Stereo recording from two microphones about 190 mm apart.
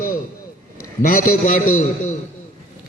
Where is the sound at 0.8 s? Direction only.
45° left (ahead or behind).